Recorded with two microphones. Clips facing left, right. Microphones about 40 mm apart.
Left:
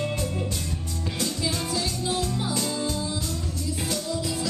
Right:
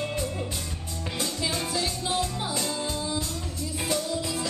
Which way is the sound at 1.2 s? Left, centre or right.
Centre.